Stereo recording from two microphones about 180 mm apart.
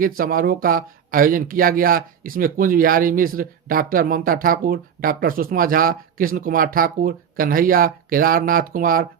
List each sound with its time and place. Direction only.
0.0 s speech: 50° right (ahead or behind)